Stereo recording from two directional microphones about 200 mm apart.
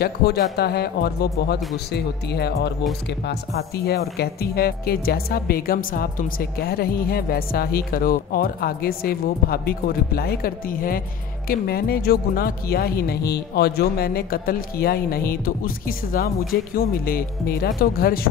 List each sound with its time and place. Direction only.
0.0 s speech: 55° left (ahead or behind)